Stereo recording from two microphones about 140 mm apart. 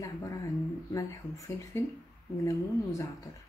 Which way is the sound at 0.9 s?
25° left (ahead or behind).